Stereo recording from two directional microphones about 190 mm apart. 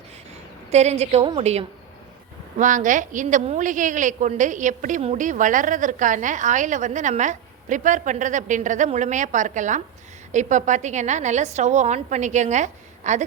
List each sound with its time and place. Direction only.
0.7 s a woman's voice: 35° right (ahead or behind)